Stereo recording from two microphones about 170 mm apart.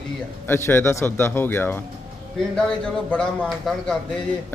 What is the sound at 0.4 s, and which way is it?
A man's voice, 15° left (ahead or behind).